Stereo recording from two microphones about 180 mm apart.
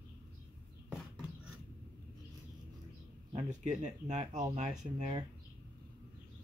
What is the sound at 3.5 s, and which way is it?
Speech, 40° right (ahead or behind).